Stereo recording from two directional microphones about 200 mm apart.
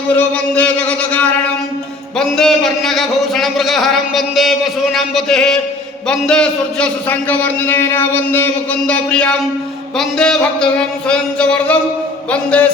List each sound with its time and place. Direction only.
0.2 s a man's voice: 10° left (ahead or behind)